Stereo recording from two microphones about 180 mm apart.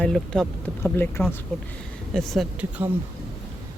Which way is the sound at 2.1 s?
Centre (ahead or behind).